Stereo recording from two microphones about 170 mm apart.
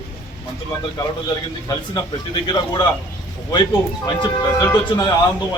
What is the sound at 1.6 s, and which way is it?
A man's voice, 25° left (ahead or behind).